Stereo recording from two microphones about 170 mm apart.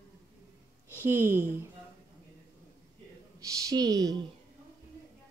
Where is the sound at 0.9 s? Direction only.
10° right (ahead or behind).